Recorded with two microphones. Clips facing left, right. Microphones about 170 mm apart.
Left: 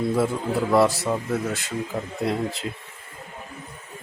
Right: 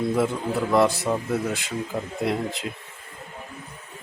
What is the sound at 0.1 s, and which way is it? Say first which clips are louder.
A man's voice: left 1 dB; centre (ahead or behind).